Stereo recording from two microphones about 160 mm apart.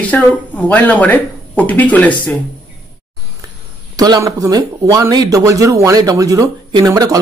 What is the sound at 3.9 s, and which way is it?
Speech, 25° right (ahead or behind).